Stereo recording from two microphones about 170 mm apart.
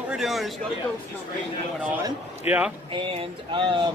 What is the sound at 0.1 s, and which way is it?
Speech, centre (ahead or behind).